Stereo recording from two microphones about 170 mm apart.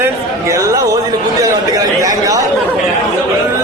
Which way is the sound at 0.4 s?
20° right (ahead or behind).